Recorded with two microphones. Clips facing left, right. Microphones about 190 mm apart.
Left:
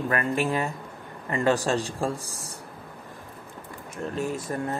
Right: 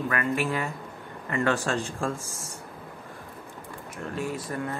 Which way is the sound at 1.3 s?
35° left (ahead or behind).